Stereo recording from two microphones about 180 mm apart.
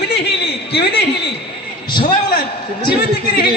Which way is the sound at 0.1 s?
65° left (ahead or behind).